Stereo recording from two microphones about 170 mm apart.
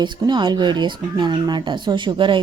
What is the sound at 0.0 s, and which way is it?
Speech, 25° right (ahead or behind).